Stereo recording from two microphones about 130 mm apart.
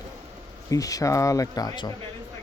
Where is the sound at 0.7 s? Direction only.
25° left (ahead or behind).